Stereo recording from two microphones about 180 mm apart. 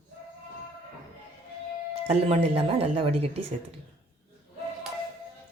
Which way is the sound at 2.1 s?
35° right (ahead or behind).